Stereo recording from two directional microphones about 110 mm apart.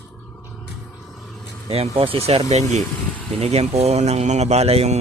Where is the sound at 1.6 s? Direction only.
65° right (ahead or behind); by 2.8 s 90° right.